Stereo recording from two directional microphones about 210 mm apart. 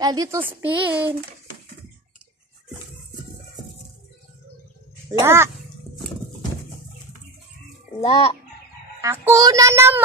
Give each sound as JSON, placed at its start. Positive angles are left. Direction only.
{"t": 0.0, "sound": "speech", "side_deg": -20}
{"t": 5.2, "sound": "speech", "side_deg": -10}
{"t": 8.0, "sound": "a child's voice", "side_deg": 30}
{"t": 9.0, "sound": "speech", "side_deg": -10}